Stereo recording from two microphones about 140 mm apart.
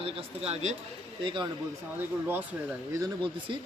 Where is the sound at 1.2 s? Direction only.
35° right (ahead or behind).